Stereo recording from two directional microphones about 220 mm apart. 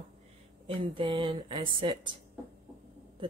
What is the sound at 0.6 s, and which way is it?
Speech, 20° right (ahead or behind).